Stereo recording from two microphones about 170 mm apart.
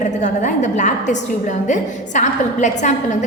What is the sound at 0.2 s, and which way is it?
A woman's voice, 45° left (ahead or behind).